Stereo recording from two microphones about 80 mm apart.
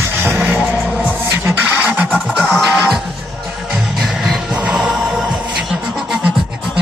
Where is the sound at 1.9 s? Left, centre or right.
Centre.